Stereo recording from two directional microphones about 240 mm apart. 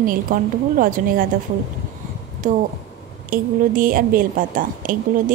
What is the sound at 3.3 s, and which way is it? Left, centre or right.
A woman's voice, right.